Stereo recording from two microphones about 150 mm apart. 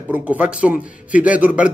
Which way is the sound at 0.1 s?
10° right (ahead or behind).